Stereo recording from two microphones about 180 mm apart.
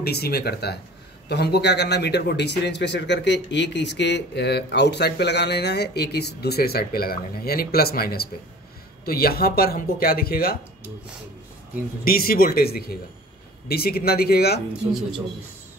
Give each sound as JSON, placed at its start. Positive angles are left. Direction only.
{"t": 0.0, "sound": "a man's voice", "side_deg": 60}
{"t": 12.0, "sound": "speech", "side_deg": 55}